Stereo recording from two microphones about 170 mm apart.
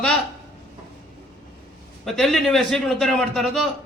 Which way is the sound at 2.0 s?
Centre (ahead or behind).